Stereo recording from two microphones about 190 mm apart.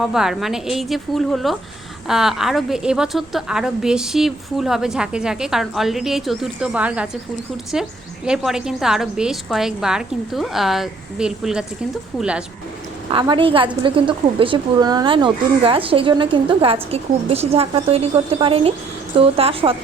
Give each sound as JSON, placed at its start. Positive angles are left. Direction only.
{"t": 0.0, "sound": "a woman's voice", "side_deg": 0}
{"t": 13.1, "sound": "a woman's voice", "side_deg": -25}